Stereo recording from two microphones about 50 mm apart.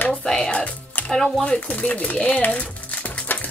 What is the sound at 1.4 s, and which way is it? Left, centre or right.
Speech, left.